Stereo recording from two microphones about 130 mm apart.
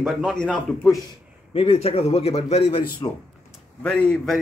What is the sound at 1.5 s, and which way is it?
A man's voice, 50° left (ahead or behind).